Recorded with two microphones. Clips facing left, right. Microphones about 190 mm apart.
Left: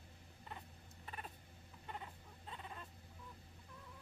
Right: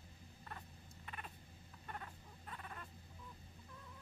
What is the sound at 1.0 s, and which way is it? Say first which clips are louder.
Cat: left 1 dB; 35° left (ahead or behind).